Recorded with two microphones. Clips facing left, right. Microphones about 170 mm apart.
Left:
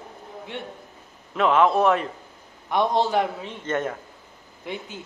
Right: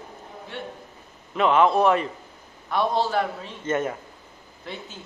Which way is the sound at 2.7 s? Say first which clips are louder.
Left 2 dB; 20° left (ahead or behind).